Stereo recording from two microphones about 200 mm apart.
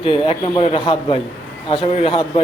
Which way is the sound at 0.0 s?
25° left (ahead or behind).